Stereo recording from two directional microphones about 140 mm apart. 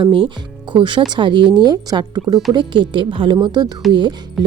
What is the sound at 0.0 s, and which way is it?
Speech, 40° right (ahead or behind).